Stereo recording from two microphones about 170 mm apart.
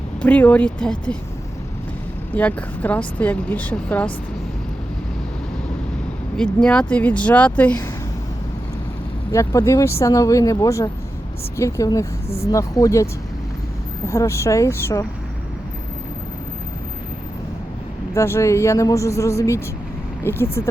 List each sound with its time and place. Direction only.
0.2 s speech: 10° left (ahead or behind)
2.3 s speech: 10° left (ahead or behind)
6.3 s speech: 5° left (ahead or behind)
9.3 s speech: 20° left (ahead or behind)
14.1 s speech: 15° left (ahead or behind)
18.1 s speech: 15° left (ahead or behind)